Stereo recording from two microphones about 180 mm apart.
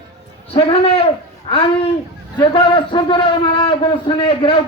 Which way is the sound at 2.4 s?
30° left (ahead or behind).